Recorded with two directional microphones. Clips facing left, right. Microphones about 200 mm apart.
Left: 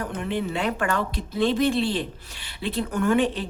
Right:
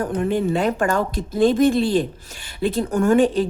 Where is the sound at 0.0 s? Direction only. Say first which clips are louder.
Right 7 dB; 45° right (ahead or behind).